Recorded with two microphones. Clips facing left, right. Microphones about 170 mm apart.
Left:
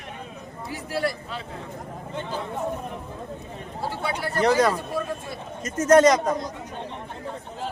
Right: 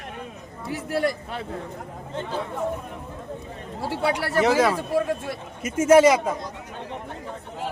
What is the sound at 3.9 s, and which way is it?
Speech, 80° right.